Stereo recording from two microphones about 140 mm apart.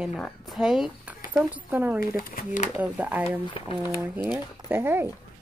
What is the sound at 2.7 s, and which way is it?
Speech, 10° right (ahead or behind).